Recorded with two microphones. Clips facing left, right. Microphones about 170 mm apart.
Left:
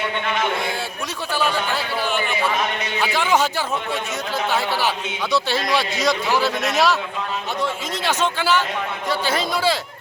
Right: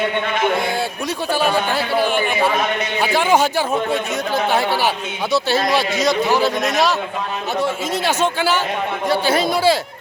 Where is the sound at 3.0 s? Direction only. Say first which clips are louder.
Right 3 dB; 50° right (ahead or behind).